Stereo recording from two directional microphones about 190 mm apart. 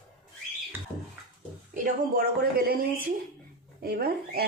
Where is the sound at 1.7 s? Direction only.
45° right (ahead or behind).